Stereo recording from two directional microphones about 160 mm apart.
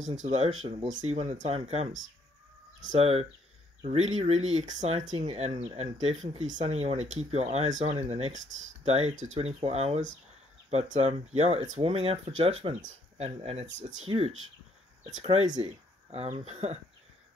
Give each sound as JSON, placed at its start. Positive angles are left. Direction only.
{"t": 0.2, "sound": "speech", "side_deg": -45}
{"t": 3.0, "sound": "speech", "side_deg": -40}